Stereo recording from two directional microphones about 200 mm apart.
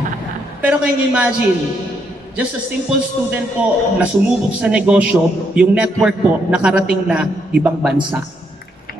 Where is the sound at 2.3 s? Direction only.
5° right (ahead or behind).